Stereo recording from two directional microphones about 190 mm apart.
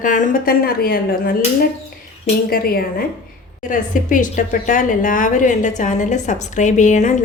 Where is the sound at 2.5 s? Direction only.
50° left (ahead or behind).